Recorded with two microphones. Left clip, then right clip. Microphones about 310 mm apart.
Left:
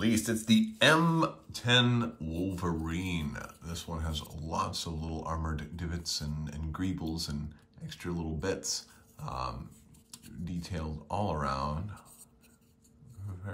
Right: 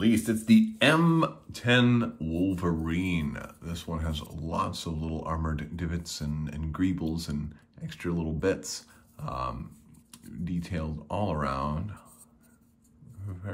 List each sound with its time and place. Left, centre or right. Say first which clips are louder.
0.1 s speech: right 4 dB; centre